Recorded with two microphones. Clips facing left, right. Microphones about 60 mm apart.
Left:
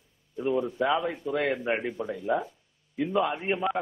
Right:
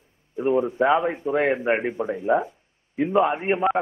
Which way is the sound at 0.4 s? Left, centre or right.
Right.